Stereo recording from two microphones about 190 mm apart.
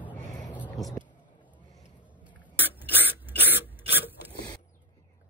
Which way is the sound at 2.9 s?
10° left (ahead or behind).